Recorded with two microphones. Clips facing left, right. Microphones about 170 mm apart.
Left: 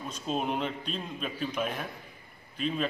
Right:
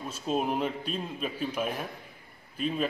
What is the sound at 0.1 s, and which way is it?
A man's voice, 5° right (ahead or behind).